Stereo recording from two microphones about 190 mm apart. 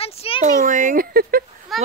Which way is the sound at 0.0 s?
30° left (ahead or behind).